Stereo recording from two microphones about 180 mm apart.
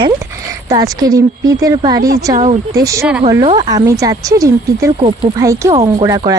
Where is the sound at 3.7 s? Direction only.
15° right (ahead or behind).